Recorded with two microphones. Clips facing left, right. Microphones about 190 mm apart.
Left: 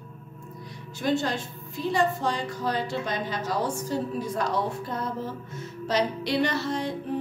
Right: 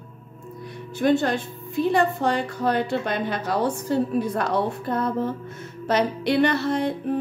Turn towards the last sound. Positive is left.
turn(degrees=-60)  # may be behind; listen again after turning